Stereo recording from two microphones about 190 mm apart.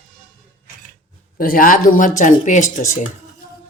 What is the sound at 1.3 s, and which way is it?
Speech, 50° left (ahead or behind).